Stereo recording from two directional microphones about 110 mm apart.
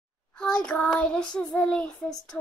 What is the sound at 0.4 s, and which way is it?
Child singing, 10° left (ahead or behind).